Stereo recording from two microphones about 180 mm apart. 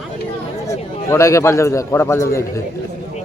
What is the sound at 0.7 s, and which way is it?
A man's voice, 15° left (ahead or behind).